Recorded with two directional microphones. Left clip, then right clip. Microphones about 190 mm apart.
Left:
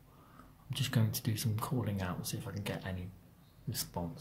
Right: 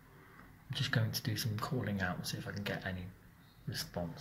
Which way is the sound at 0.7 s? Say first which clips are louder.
Right 1 dB; 25° left (ahead or behind).